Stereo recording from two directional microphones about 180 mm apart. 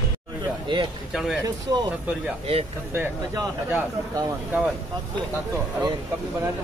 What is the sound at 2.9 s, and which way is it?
Speech, 10° right (ahead or behind).